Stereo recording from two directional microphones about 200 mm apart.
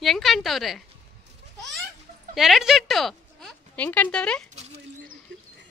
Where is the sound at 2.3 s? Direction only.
Centre (ahead or behind).